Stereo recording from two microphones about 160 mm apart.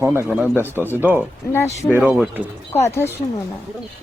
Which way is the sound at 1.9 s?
5° right (ahead or behind).